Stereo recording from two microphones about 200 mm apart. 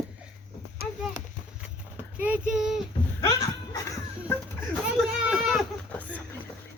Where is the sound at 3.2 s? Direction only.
20° left (ahead or behind).